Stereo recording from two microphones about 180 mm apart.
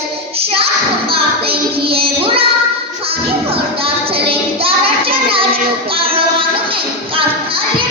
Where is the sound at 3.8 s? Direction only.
30° right (ahead or behind).